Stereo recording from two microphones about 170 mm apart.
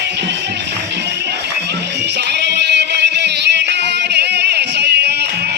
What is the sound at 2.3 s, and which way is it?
Music, 90° right.